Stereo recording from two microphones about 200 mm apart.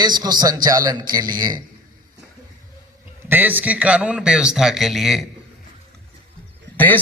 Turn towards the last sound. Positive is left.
turn(degrees=10)  # may be behind; listen again after turning